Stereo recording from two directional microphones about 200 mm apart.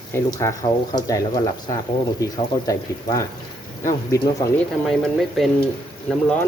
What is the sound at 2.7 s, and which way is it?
Speech, 15° left (ahead or behind).